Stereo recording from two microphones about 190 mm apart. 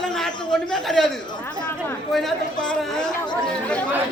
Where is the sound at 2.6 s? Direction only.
5° left (ahead or behind).